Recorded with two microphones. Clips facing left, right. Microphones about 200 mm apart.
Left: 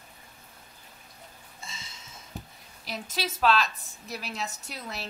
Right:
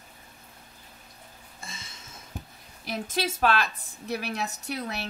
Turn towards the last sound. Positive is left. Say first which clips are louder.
# right 6 dB
turn(degrees=-65)  # may be behind; listen again after turning